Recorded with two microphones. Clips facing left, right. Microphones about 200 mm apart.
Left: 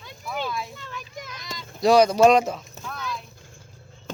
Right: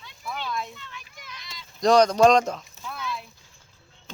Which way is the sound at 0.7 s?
45° left (ahead or behind).